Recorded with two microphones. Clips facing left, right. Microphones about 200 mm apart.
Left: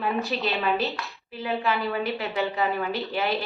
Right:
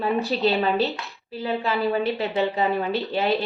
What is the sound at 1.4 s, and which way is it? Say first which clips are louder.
A woman's voice: right 3 dB; 30° right (ahead or behind).